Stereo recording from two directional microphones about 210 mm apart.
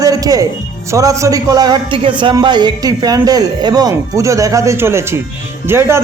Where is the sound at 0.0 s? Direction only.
15° right (ahead or behind).